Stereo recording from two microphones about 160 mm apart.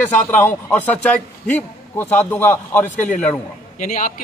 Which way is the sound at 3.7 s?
55° left (ahead or behind).